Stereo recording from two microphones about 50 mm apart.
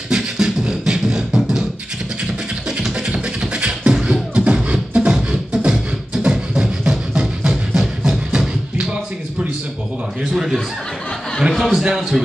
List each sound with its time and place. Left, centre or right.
0.1 s beatboxing: centre
2.9 s beatboxing: centre
11.5 s a man's voice: centre